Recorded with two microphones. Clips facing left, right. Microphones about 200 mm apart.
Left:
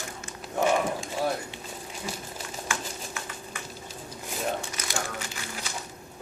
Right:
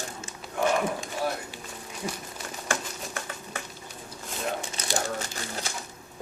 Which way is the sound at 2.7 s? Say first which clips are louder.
Right 4 dB; 50° right (ahead or behind).